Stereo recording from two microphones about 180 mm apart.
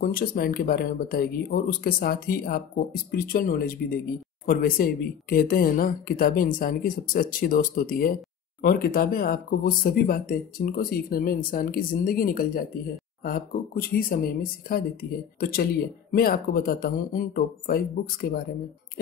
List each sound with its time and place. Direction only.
0.0 s speech: 55° left (ahead or behind)